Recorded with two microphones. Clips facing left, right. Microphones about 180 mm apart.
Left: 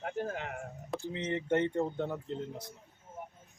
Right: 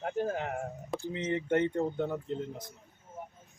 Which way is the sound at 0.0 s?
40° right (ahead or behind).